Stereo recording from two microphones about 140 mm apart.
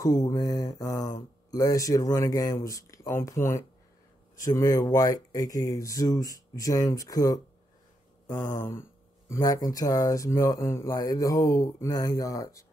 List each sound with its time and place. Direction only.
0.0 s speech: 25° left (ahead or behind)
9.3 s speech: 25° left (ahead or behind)